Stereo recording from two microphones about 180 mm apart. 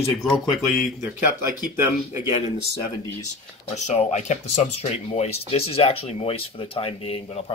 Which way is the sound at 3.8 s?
40° left (ahead or behind).